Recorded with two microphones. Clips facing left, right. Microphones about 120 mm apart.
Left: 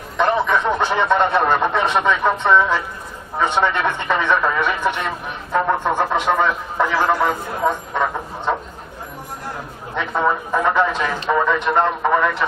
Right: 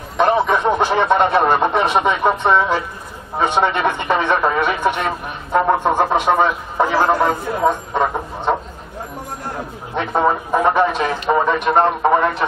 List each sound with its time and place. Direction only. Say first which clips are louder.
0.2 s a man's voice: right 2 dB; 15° right (ahead or behind)
5.9 s speech: right 3 dB; 40° right (ahead or behind)
6.1 s a man's voice: right 3 dB; 15° right (ahead or behind)
6.8 s a man's voice: right 3 dB; 30° right (ahead or behind)
7.6 s a sound: right 2 dB; 25° right (ahead or behind)
9.9 s a man's voice: right 3 dB; 25° right (ahead or behind)